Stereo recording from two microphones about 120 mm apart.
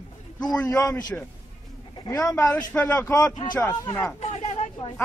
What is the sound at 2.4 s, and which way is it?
Speech, 15° left (ahead or behind).